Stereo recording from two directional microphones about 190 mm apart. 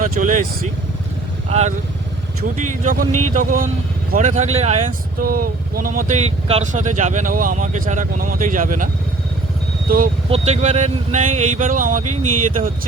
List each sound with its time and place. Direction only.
0.0 s speech: 45° right (ahead or behind)
1.5 s speech: 35° right (ahead or behind)
5.2 s speech: 50° right (ahead or behind)
10.2 s speech: 35° right (ahead or behind)